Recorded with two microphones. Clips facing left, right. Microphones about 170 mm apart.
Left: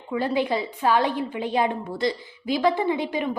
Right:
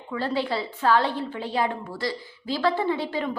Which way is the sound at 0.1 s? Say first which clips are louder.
Left 3 dB; 15° left (ahead or behind).